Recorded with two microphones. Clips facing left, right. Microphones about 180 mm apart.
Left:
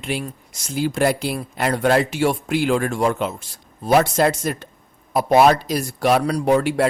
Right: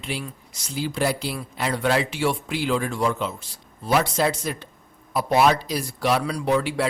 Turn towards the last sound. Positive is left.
turn(degrees=45)  # may be behind; listen again after turning